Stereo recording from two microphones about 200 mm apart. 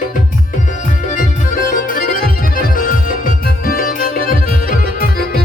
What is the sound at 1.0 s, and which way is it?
Music, 40° left (ahead or behind).